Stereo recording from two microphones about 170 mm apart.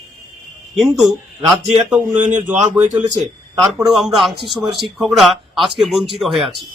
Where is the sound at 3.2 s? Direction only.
Centre (ahead or behind).